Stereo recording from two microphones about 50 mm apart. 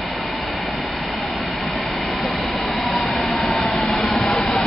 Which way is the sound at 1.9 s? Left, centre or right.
Centre.